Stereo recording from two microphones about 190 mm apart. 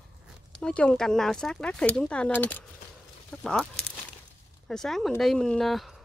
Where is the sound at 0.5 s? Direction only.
5° left (ahead or behind).